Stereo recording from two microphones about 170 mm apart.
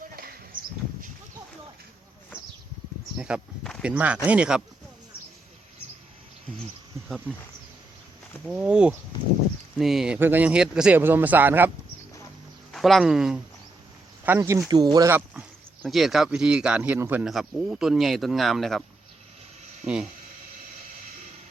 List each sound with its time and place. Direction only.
3.2 s a sound: 5° right (ahead or behind)
3.9 s speech: 10° right (ahead or behind)
8.4 s speech: 5° right (ahead or behind)
12.7 s speech: centre (ahead or behind)
14.3 s speech: 15° right (ahead or behind)
15.1 s speech: 10° right (ahead or behind)
19.8 s speech: 5° right (ahead or behind)